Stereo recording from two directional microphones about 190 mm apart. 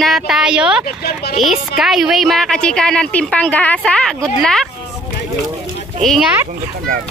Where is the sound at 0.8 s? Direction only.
55° left (ahead or behind).